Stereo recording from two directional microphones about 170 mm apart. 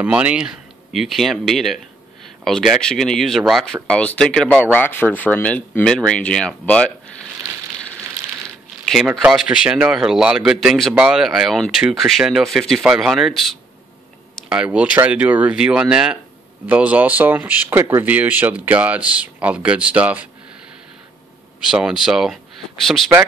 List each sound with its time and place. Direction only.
0.0 s speech: 5° right (ahead or behind)
8.9 s speech: 5° right (ahead or behind)
21.5 s speech: 5° right (ahead or behind)